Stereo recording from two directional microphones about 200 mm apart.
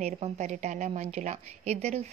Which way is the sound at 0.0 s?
35° right (ahead or behind).